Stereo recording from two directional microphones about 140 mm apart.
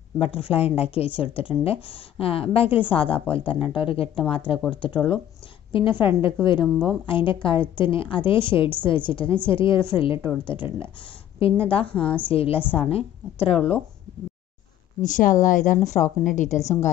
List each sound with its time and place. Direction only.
0.2 s a woman's voice: 45° left (ahead or behind)
15.0 s a woman's voice: 65° left (ahead or behind)